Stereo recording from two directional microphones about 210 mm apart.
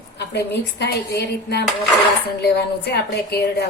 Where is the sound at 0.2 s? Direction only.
50° left (ahead or behind).